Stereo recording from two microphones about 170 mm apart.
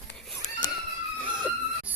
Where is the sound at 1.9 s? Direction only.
10° right (ahead or behind).